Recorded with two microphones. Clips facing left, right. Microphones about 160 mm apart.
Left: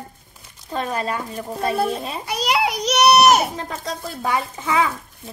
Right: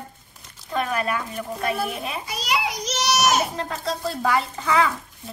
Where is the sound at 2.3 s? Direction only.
65° left (ahead or behind).